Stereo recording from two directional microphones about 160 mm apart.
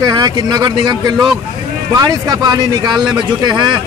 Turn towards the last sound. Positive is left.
turn(degrees=-30)  # may be behind; listen again after turning